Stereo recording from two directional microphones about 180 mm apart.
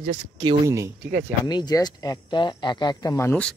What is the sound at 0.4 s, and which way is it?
Speech, 20° right (ahead or behind).